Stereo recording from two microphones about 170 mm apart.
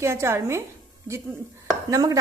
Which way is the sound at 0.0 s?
15° right (ahead or behind).